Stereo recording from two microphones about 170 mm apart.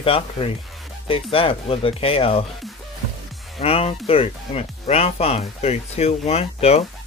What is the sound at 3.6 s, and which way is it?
Speech, 35° left (ahead or behind).